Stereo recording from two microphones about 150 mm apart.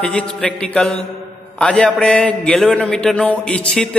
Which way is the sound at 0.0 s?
5° left (ahead or behind).